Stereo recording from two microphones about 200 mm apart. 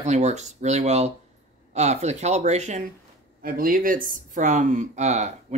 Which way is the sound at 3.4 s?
45° right (ahead or behind).